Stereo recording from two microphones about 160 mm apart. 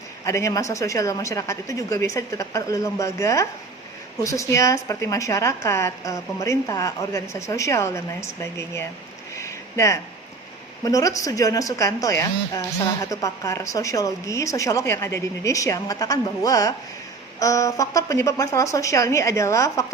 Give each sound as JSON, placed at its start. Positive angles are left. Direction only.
{"t": 0.3, "sound": "a woman's voice", "side_deg": 20}
{"t": 9.3, "sound": "a sound", "side_deg": 20}
{"t": 10.8, "sound": "a woman's voice", "side_deg": 20}